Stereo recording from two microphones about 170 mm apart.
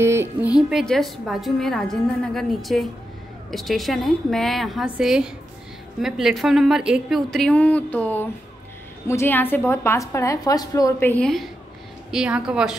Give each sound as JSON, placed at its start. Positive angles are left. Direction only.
{"t": 0.0, "sound": "speech", "side_deg": -15}
{"t": 0.6, "sound": "a woman's voice", "side_deg": 0}